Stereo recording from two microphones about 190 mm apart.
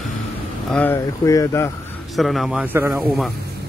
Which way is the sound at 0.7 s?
10° left (ahead or behind).